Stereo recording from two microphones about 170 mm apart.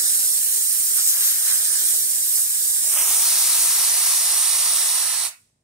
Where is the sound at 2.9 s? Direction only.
5° right (ahead or behind).